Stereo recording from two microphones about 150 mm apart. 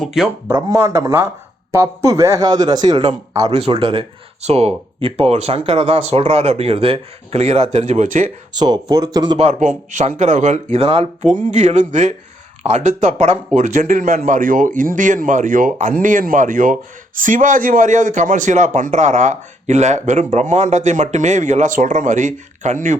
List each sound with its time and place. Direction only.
0.0 s speech: centre (ahead or behind)
0.5 s a man's voice: 20° right (ahead or behind)
3.5 s speech: 40° right (ahead or behind)
8.5 s a man's voice: 30° right (ahead or behind)
9.4 s a man's voice: 55° right (ahead or behind)